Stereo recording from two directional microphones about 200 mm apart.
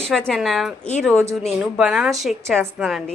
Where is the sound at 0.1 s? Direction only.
Centre (ahead or behind).